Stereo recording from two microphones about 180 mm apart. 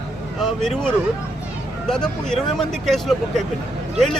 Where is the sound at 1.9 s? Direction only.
5° left (ahead or behind).